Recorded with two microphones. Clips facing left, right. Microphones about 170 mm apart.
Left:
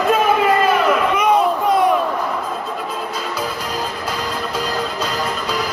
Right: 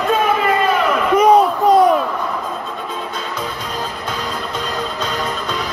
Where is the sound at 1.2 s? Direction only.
35° right (ahead or behind).